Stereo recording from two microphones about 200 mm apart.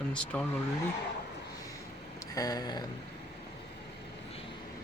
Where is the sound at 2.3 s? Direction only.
15° left (ahead or behind).